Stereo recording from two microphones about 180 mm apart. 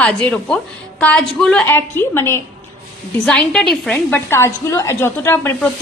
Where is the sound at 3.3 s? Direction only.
5° left (ahead or behind).